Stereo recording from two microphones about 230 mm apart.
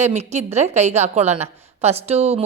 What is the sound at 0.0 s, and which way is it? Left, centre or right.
A woman's voice, right.